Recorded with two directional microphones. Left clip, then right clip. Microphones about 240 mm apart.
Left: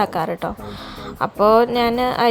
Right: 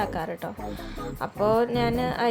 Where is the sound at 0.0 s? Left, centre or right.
Centre.